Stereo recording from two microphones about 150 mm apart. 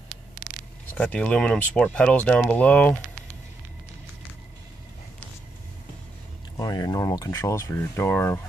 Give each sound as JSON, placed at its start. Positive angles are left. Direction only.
{"t": 0.9, "sound": "speech", "side_deg": 10}
{"t": 6.5, "sound": "speech", "side_deg": 25}